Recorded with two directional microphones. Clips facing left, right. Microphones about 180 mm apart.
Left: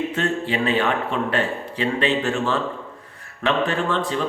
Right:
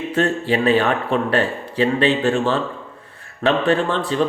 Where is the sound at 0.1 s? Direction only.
35° right (ahead or behind).